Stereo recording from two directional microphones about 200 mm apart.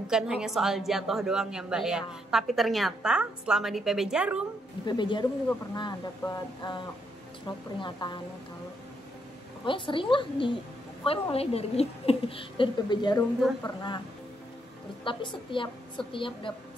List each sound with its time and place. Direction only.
0.0 s a woman's voice: 5° right (ahead or behind)
4.8 s a woman's voice: 25° left (ahead or behind)
9.7 s a woman's voice: 25° left (ahead or behind)
15.0 s a woman's voice: 25° left (ahead or behind)